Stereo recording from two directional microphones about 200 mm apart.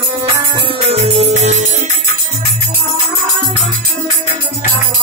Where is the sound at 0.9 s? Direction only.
30° right (ahead or behind).